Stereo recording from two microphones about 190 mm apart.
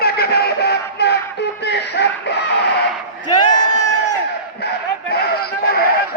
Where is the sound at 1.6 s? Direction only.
65° left (ahead or behind).